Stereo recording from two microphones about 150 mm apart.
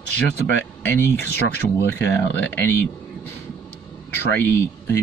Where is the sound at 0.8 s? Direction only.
10° left (ahead or behind).